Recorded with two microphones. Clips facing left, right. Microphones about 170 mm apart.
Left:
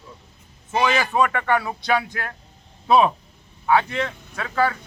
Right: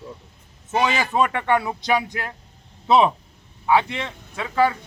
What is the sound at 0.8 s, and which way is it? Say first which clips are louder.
Speech: left 1 dB; 25° right (ahead or behind).